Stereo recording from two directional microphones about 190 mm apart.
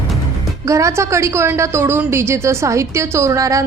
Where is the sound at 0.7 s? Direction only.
15° right (ahead or behind).